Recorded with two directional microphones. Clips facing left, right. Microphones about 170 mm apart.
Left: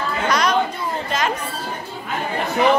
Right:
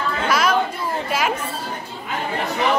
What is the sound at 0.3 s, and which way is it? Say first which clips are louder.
Chatter: even; 5° right (ahead or behind).